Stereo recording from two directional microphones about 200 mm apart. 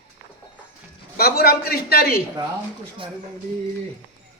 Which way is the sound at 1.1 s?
50° left (ahead or behind).